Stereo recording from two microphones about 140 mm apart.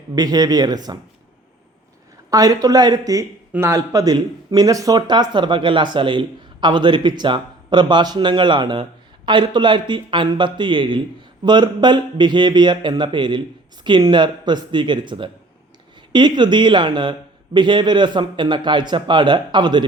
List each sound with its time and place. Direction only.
0.2 s speech: 25° right (ahead or behind)
2.3 s speech: 25° right (ahead or behind)